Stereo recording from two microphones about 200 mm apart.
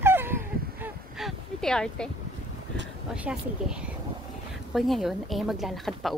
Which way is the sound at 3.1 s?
5° right (ahead or behind).